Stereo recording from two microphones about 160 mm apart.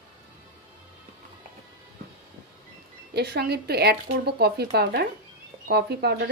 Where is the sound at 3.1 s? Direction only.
90° right.